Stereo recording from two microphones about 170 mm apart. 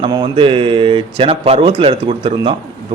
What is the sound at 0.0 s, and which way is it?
Speech, 30° right (ahead or behind).